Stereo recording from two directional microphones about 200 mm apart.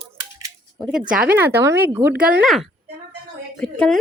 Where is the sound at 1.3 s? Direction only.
10° right (ahead or behind).